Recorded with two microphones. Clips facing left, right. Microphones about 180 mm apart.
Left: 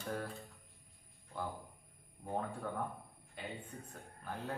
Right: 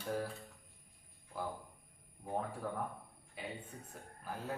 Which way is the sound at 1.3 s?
5° right (ahead or behind).